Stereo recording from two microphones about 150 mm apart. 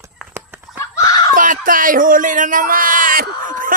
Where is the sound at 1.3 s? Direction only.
60° right (ahead or behind).